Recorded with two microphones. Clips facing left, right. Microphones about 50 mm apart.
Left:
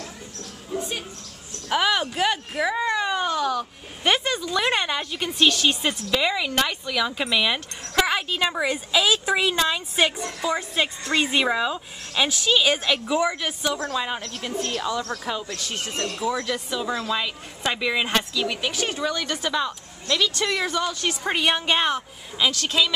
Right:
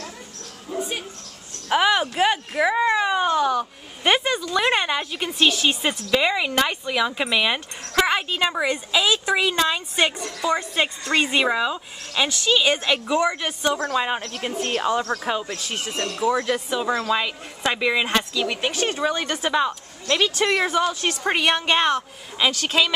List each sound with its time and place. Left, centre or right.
0.7 s a sound: centre
1.7 s speech: centre
12.8 s speech: centre
13.1 s speech: centre
13.7 s speech: right
17.6 s speech: centre
18.3 s speech: centre
21.4 s speech: centre
22.4 s speech: right